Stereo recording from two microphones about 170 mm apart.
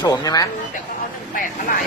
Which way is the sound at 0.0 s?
20° left (ahead or behind).